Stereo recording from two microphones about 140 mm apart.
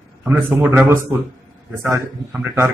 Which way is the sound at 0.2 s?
15° right (ahead or behind).